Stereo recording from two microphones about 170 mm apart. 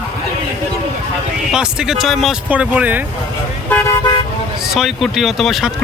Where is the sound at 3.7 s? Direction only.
15° left (ahead or behind).